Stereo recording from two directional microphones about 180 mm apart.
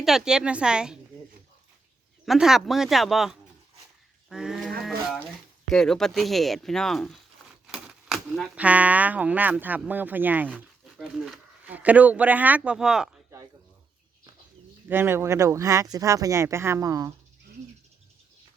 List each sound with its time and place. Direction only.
0.0 s speech: 5° right (ahead or behind)
2.2 s speech: centre (ahead or behind)
4.8 s a sound: centre (ahead or behind)
5.6 s speech: 5° left (ahead or behind)
14.8 s speech: 15° right (ahead or behind)